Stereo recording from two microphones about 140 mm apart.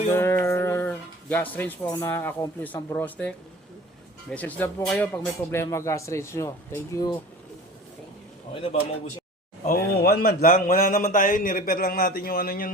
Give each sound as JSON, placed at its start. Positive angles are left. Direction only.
{"t": 0.1, "sound": "speech", "side_deg": 15}
{"t": 8.5, "sound": "a man's voice", "side_deg": 40}
{"t": 9.9, "sound": "a man's voice", "side_deg": 90}